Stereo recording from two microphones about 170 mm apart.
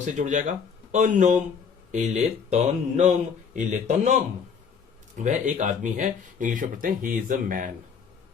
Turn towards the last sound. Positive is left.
turn(degrees=-50)  # may be behind; listen again after turning